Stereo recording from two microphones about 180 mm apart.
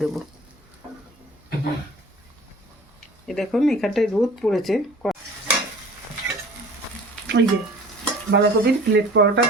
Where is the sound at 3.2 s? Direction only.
Centre (ahead or behind).